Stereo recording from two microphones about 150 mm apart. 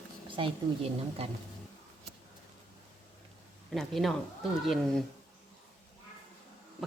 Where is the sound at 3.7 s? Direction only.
Centre (ahead or behind).